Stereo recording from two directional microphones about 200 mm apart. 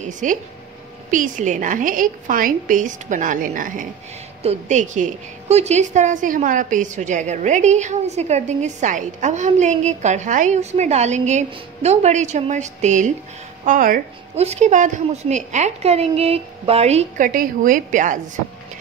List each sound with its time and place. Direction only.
0.2 s a woman's voice: 40° right (ahead or behind)